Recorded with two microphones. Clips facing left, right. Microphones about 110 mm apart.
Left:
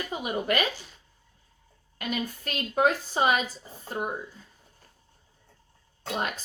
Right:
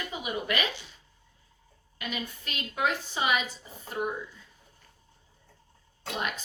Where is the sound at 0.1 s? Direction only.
40° left (ahead or behind).